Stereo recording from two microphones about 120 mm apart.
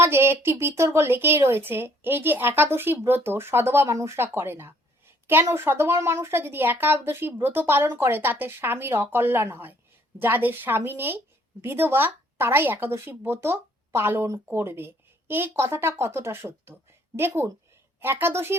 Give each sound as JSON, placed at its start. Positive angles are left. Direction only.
{"t": 0.0, "sound": "a woman's voice", "side_deg": -20}